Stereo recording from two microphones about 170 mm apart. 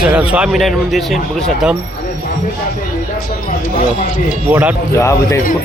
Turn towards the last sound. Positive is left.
turn(degrees=15)  # may be behind; listen again after turning